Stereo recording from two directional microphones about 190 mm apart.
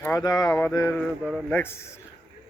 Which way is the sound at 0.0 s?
20° left (ahead or behind).